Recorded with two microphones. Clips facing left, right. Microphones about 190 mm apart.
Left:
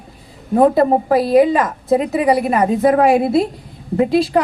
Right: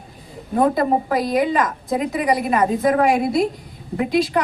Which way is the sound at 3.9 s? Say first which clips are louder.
Left 5 dB; 30° left (ahead or behind).